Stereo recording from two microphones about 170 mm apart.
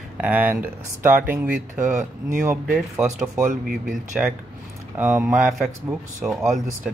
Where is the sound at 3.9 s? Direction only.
5° right (ahead or behind).